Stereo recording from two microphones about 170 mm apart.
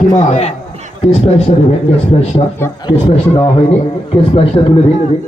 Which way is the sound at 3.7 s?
35° left (ahead or behind).